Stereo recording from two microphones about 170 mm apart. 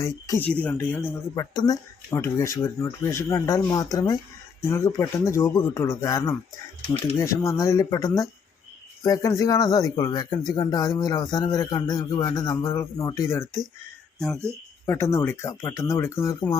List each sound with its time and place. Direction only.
0.0 s speech: 15° left (ahead or behind)
14.8 s speech: 15° left (ahead or behind)